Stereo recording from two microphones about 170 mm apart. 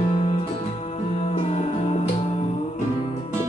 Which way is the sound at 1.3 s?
35° left (ahead or behind).